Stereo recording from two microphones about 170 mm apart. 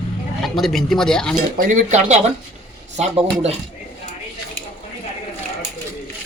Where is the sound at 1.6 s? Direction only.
50° right (ahead or behind).